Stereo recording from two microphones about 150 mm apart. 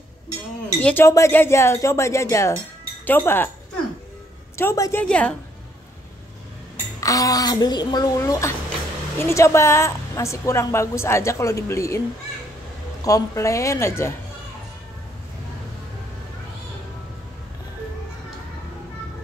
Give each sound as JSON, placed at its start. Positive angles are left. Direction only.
{"t": 0.8, "sound": "a woman's voice", "side_deg": 15}
{"t": 4.6, "sound": "a woman's voice", "side_deg": 20}
{"t": 5.0, "sound": "a woman's voice", "side_deg": 5}
{"t": 7.0, "sound": "a woman's voice", "side_deg": 25}
{"t": 13.0, "sound": "a woman's voice", "side_deg": 20}